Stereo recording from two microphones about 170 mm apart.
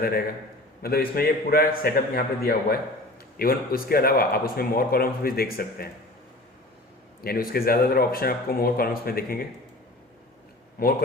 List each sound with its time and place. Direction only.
0.8 s a man's voice: 65° left (ahead or behind)
7.3 s a man's voice: 60° left (ahead or behind)